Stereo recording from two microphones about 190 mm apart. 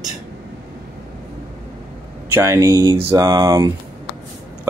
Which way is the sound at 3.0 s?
20° right (ahead or behind).